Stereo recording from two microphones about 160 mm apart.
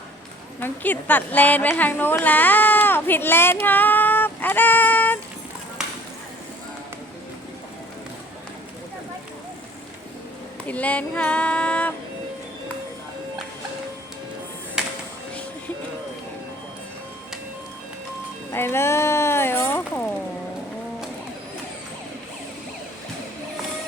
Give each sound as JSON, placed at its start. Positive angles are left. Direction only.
{"t": 0.6, "sound": "a woman's voice", "side_deg": 10}
{"t": 10.7, "sound": "child singing", "side_deg": 10}
{"t": 18.5, "sound": "a sound", "side_deg": 15}